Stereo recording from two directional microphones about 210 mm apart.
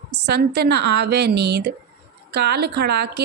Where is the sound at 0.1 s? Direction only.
50° right (ahead or behind).